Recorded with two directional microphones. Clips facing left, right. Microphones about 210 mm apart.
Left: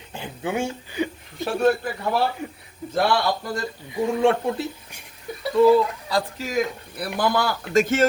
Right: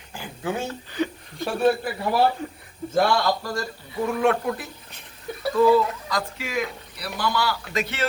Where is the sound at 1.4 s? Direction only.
Centre (ahead or behind).